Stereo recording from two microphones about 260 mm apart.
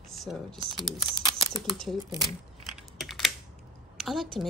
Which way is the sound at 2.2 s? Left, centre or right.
Centre.